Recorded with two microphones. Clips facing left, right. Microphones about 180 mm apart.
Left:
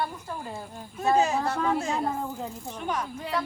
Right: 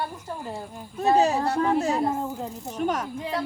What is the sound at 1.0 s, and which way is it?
A woman's voice, 35° right (ahead or behind).